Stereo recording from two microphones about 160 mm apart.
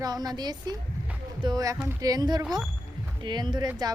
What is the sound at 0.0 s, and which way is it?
A woman's voice, 25° right (ahead or behind).